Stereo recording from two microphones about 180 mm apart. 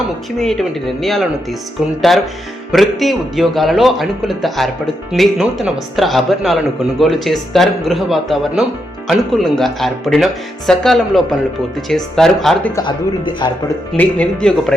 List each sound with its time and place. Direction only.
0.3 s speech: centre (ahead or behind)
12.7 s speech: 25° left (ahead or behind)
13.9 s speech: 10° left (ahead or behind)